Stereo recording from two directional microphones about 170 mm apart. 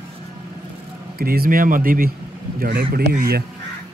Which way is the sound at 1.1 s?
60° right (ahead or behind).